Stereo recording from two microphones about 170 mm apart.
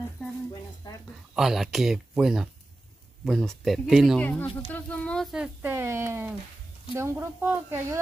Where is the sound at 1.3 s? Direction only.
Centre (ahead or behind).